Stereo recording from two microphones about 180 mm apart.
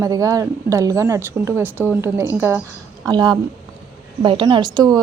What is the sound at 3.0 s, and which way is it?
A woman's voice, 25° right (ahead or behind).